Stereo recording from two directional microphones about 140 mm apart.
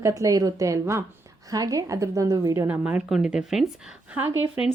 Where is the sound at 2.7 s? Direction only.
10° right (ahead or behind).